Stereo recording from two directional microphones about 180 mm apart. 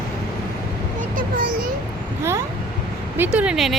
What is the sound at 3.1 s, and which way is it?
Speech, 10° right (ahead or behind).